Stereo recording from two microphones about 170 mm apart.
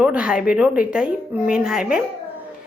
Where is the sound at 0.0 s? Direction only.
5° right (ahead or behind).